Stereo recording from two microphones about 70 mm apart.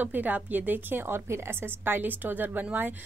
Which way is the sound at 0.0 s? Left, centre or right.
Right.